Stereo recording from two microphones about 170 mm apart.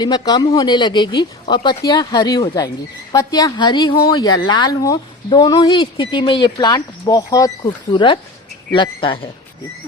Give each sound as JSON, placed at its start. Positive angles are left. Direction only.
{"t": 0.0, "sound": "speech", "side_deg": 25}